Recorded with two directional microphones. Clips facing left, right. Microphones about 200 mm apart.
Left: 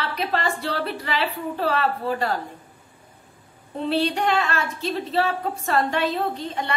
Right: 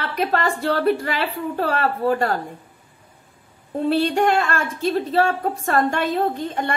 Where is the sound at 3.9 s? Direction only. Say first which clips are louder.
Right 3 dB; 50° right (ahead or behind).